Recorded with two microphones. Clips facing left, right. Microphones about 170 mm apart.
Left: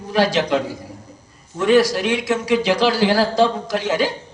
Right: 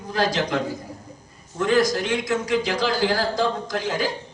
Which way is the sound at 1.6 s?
75° left (ahead or behind).